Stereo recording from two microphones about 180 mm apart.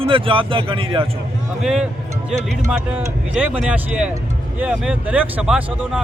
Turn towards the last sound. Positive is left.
turn(degrees=-5)  # may be behind; listen again after turning